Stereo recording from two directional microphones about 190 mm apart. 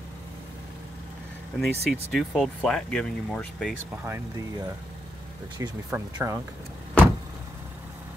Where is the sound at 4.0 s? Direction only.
10° right (ahead or behind).